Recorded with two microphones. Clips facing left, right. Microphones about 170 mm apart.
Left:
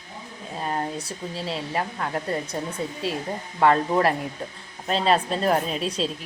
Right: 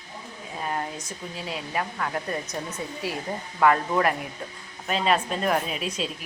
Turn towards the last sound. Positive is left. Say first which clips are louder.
# left 3 dB
turn(degrees=35)  # may be behind; listen again after turning